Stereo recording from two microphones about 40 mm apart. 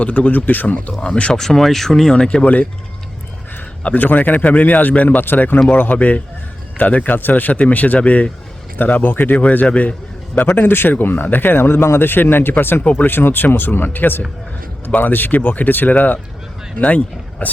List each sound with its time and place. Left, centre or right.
0.0 s speech: left
0.9 s speech: left
1.3 s speech: centre
2.1 s speech: left
2.4 s speech: left
3.9 s speech: left
6.0 s speech: left
8.8 s speech: left
9.3 s speech: left
10.4 s speech: left
17.4 s speech: left